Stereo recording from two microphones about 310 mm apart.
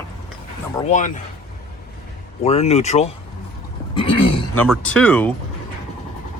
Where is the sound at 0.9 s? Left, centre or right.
Left.